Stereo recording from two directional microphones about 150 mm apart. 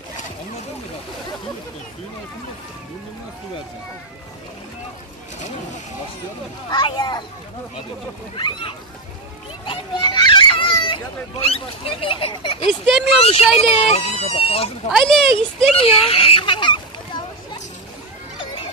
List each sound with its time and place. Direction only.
6.7 s speech: 30° left (ahead or behind)
8.4 s a child's voice: 30° left (ahead or behind)
14.9 s speech: centre (ahead or behind)
15.8 s speech: 40° left (ahead or behind)